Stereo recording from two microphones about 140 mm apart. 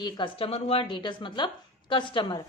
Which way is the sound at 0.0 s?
35° left (ahead or behind).